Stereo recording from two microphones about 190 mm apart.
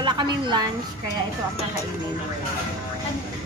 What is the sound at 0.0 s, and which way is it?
Speech, 25° right (ahead or behind).